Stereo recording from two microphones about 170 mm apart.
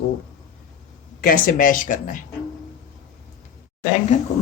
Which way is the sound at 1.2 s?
55° left (ahead or behind).